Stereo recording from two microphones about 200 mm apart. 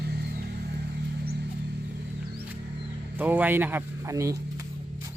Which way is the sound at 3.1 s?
10° right (ahead or behind).